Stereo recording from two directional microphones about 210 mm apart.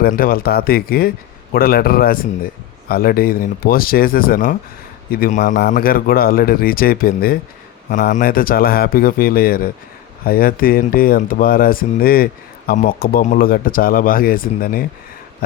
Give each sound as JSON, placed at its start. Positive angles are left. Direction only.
{"t": 0.0, "sound": "speech", "side_deg": 45}